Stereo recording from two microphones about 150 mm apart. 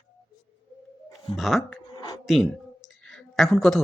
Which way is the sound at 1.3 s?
Centre (ahead or behind).